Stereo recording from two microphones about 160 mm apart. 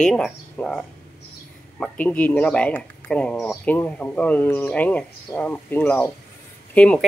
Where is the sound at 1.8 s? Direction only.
10° left (ahead or behind).